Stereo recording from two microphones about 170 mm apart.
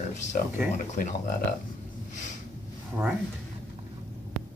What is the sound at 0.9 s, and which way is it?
Speech, 55° left (ahead or behind).